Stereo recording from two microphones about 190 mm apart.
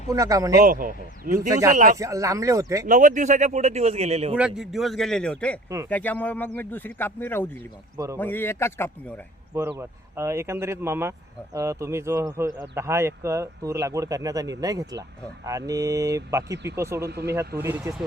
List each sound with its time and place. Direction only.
0.1 s speech: 20° right (ahead or behind)
0.6 s speech: 45° right (ahead or behind)
1.4 s speech: 15° right (ahead or behind)
1.7 s speech: 45° right (ahead or behind)
2.0 s speech: 15° right (ahead or behind)
2.8 s speech: 45° right (ahead or behind)
4.4 s speech: 5° right (ahead or behind)
5.6 s speech: 15° right (ahead or behind)
5.9 s speech: 10° left (ahead or behind)
7.9 s speech: 15° right (ahead or behind)
8.2 s speech: 10° left (ahead or behind)
9.6 s speech: 15° right (ahead or behind)
17.0 s speech: 60° right (ahead or behind)
17.6 s speech: 15° right (ahead or behind)